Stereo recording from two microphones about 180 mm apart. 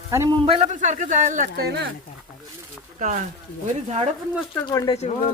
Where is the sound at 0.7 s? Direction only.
45° right (ahead or behind).